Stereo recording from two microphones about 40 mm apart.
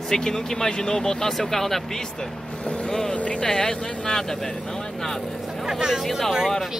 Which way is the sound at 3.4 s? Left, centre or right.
Centre.